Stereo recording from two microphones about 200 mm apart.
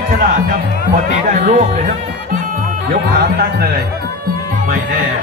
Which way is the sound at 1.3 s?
40° right (ahead or behind).